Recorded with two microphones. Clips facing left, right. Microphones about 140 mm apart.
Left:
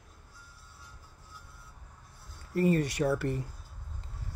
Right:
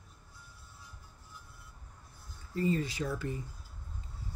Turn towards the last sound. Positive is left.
turn(degrees=75)  # may be behind; listen again after turning